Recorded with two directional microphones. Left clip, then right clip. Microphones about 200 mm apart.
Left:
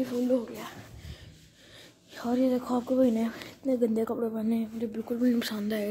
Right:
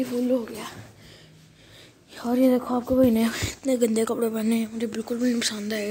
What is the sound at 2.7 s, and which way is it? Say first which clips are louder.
Speech: right 5 dB; 5° right (ahead or behind).